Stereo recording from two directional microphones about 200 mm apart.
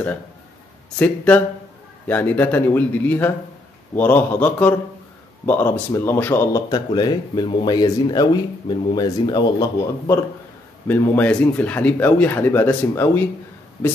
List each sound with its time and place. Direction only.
0.9 s speech: 5° left (ahead or behind)